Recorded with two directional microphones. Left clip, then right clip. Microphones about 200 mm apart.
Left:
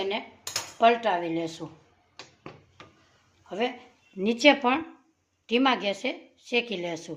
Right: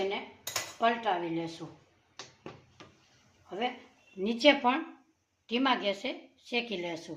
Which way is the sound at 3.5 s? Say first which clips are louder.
Left 5 dB; 55° left (ahead or behind).